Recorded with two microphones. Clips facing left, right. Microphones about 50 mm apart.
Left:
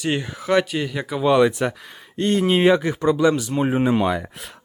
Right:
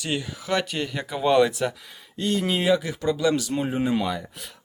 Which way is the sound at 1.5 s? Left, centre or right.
Left.